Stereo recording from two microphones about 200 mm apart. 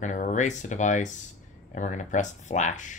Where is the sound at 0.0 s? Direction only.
40° left (ahead or behind).